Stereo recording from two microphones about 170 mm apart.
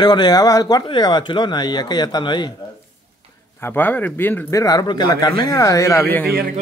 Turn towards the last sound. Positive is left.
turn(degrees=10)  # may be behind; listen again after turning